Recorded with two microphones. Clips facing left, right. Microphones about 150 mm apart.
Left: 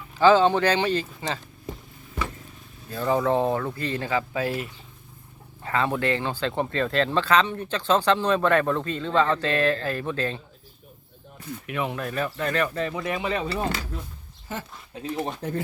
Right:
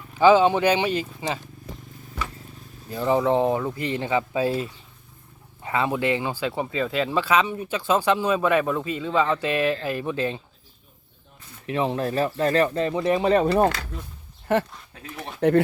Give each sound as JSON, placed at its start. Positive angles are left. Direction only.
{"t": 0.2, "sound": "speech", "side_deg": -15}
{"t": 2.9, "sound": "speech", "side_deg": -15}
{"t": 5.6, "sound": "speech", "side_deg": -15}
{"t": 11.6, "sound": "speech", "side_deg": -30}
{"t": 13.3, "sound": "speech", "side_deg": -45}
{"t": 14.5, "sound": "speech", "side_deg": -65}
{"t": 15.0, "sound": "speech", "side_deg": 35}
{"t": 15.4, "sound": "speech", "side_deg": -70}